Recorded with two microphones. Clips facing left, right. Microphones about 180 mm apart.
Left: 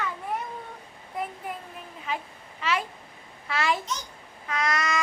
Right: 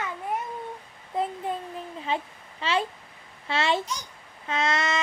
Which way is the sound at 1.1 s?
25° right (ahead or behind).